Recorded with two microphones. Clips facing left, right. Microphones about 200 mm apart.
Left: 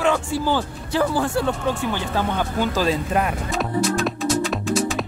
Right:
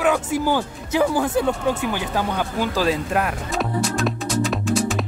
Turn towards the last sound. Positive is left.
turn(degrees=0)  # may be behind; listen again after turning